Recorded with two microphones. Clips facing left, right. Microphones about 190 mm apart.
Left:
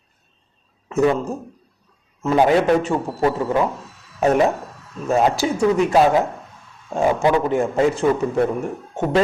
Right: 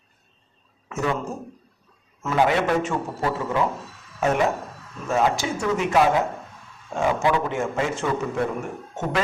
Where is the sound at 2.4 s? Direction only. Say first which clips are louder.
Left 4 dB; 35° left (ahead or behind).